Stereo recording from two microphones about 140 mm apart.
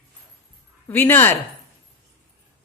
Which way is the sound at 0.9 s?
15° left (ahead or behind).